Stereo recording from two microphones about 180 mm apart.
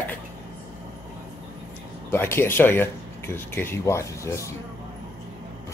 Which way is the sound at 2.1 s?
10° left (ahead or behind).